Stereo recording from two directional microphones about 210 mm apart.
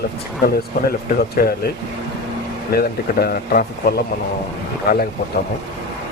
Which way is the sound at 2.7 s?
45° left (ahead or behind).